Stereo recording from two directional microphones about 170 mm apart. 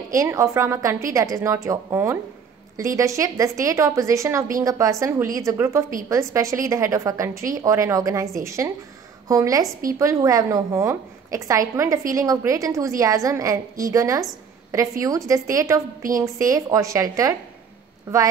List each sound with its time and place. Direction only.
0.1 s a woman's voice: 15° right (ahead or behind)